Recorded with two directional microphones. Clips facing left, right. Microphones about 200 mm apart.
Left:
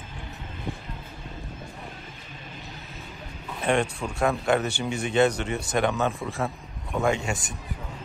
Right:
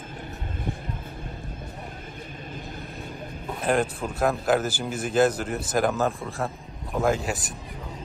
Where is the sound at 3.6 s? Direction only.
Centre (ahead or behind).